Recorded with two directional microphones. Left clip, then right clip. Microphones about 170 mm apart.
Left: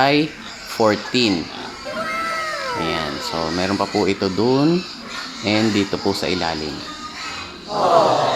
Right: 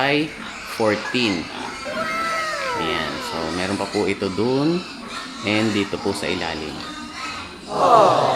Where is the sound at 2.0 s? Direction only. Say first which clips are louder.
Even; centre (ahead or behind).